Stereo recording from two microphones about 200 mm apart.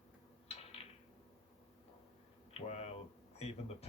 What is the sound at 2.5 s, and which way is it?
Speech, 30° left (ahead or behind).